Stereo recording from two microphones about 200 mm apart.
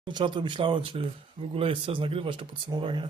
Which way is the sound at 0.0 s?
25° right (ahead or behind).